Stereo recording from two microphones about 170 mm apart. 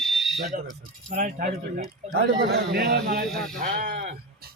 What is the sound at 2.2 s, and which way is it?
Speech, 80° right.